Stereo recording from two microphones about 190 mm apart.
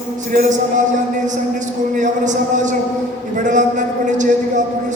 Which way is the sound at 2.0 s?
40° right (ahead or behind).